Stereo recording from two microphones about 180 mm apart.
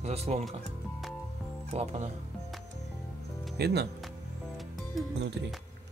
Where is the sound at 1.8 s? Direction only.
40° right (ahead or behind).